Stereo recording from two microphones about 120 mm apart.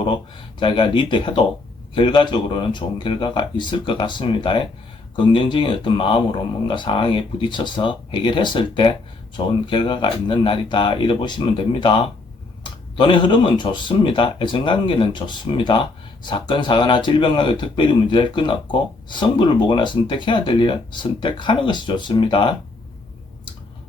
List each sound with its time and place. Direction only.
0.6 s speech: 45° left (ahead or behind)